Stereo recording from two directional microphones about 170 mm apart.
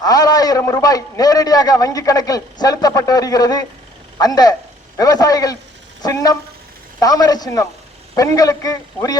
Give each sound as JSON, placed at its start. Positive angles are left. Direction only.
{"t": 0.0, "sound": "a man's voice", "side_deg": 20}